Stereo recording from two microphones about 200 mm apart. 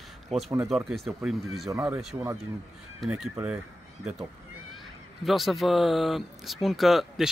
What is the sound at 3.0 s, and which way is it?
Speech, centre (ahead or behind).